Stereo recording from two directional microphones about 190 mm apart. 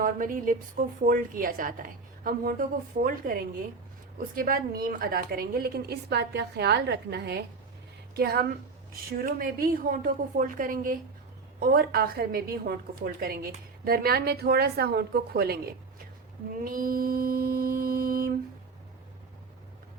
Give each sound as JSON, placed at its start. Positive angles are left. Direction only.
{"t": 0.0, "sound": "a woman's voice", "side_deg": -45}
{"t": 16.6, "sound": "mantra", "side_deg": -50}